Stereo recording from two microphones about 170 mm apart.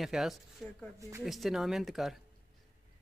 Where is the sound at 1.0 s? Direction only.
15° right (ahead or behind).